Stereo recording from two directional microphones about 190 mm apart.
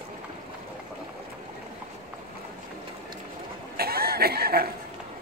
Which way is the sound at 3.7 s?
55° right (ahead or behind).